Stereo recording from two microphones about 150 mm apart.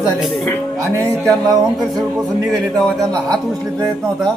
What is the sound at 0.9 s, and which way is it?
Speech, 20° right (ahead or behind).